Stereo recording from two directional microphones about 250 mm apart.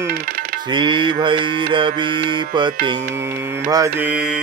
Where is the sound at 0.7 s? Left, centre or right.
Centre.